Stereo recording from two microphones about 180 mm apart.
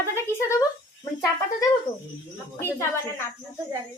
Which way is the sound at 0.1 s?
15° left (ahead or behind).